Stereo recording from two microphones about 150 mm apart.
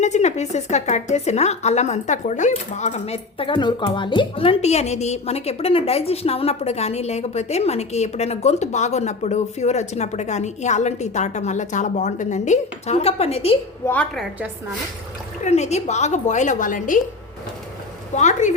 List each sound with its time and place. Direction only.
0.0 s speech: 50° left (ahead or behind)
13.8 s a woman's voice: 10° left (ahead or behind)
15.4 s speech: 50° left (ahead or behind)
18.1 s speech: 50° left (ahead or behind)